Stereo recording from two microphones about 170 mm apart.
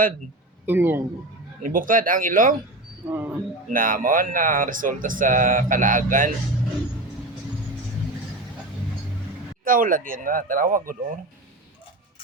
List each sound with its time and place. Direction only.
0.7 s a man's voice: 10° right (ahead or behind)
1.6 s speech: 55° right (ahead or behind)
3.1 s a man's voice: 10° right (ahead or behind)
3.7 s speech: 55° right (ahead or behind)
9.6 s speech: 55° right (ahead or behind)